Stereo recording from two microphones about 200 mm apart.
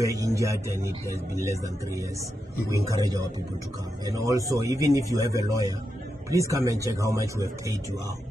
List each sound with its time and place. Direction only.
0.0 s a man's voice: 15° right (ahead or behind)